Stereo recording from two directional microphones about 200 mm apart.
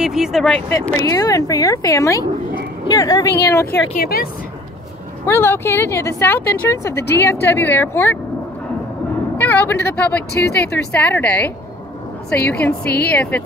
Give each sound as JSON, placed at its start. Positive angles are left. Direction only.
{"t": 0.0, "sound": "a woman's voice", "side_deg": 0}
{"t": 0.7, "sound": "speech", "side_deg": 10}
{"t": 3.9, "sound": "a woman's voice", "side_deg": 50}
{"t": 5.2, "sound": "speech", "side_deg": 10}
{"t": 9.4, "sound": "a woman's voice", "side_deg": 10}